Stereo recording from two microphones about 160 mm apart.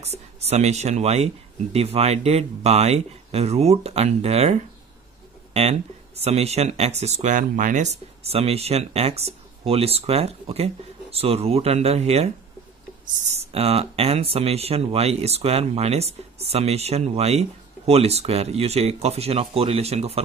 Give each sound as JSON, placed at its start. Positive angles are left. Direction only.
{"t": 0.0, "sound": "speech", "side_deg": -40}